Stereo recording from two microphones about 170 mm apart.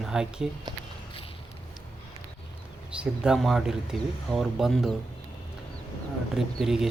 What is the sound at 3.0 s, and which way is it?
Speech, 5° right (ahead or behind).